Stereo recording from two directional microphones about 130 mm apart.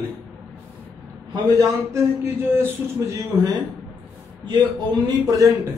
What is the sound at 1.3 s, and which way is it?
Speech, 25° right (ahead or behind).